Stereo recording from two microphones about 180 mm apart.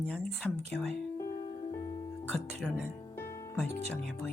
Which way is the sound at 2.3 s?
Centre (ahead or behind).